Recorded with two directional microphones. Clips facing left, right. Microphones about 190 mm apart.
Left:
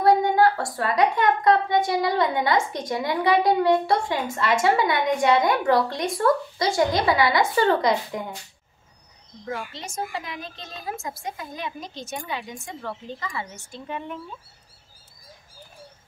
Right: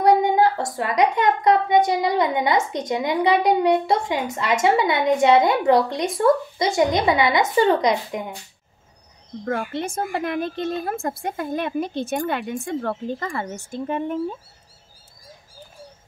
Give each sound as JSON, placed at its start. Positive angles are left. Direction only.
{"t": 0.0, "sound": "speech", "side_deg": -20}
{"t": 9.4, "sound": "a woman's voice", "side_deg": -55}